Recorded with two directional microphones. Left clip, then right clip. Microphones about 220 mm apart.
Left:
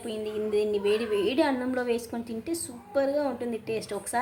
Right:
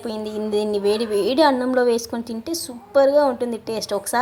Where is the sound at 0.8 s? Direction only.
15° right (ahead or behind).